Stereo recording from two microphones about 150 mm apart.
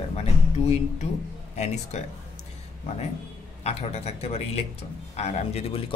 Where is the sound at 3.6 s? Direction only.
45° left (ahead or behind).